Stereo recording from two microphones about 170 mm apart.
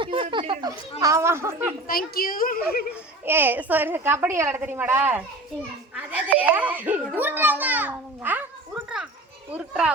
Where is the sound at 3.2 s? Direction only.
10° right (ahead or behind).